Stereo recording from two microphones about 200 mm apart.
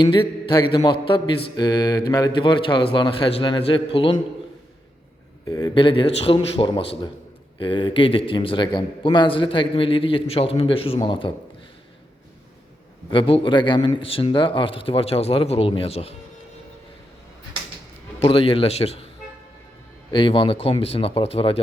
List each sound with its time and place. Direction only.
0.0 s a man's voice: 25° left (ahead or behind)
5.5 s a man's voice: 20° left (ahead or behind)
13.1 s a man's voice: 25° left (ahead or behind)
18.2 s a man's voice: 25° left (ahead or behind)
20.1 s a man's voice: 25° left (ahead or behind)